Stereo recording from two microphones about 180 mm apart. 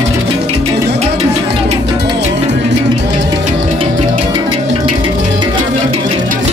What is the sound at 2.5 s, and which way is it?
Music, 80° right.